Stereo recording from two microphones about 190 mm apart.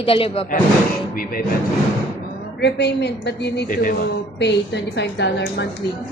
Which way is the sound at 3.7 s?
45° left (ahead or behind).